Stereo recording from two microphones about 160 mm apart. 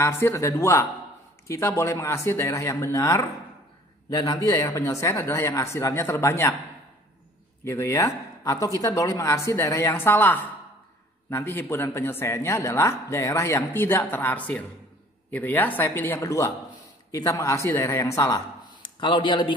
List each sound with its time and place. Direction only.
0.0 s speech: 15° left (ahead or behind)
7.6 s speech: 15° left (ahead or behind)